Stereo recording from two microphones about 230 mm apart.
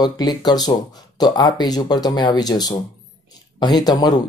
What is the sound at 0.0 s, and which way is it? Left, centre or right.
Speech, centre.